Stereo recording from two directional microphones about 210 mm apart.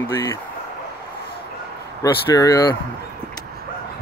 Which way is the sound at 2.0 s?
15° left (ahead or behind).